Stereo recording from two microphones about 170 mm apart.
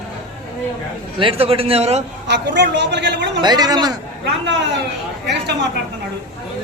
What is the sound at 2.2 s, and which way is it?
A man's voice, 90° right.